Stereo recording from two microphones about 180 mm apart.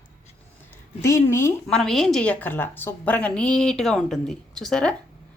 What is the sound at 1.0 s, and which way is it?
Speech, 15° left (ahead or behind).